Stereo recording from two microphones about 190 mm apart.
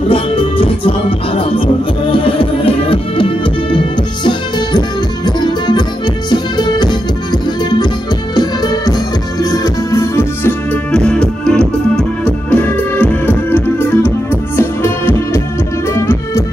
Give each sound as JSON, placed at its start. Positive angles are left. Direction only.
{"t": 0.1, "sound": "music", "side_deg": 30}
{"t": 8.4, "sound": "music", "side_deg": 20}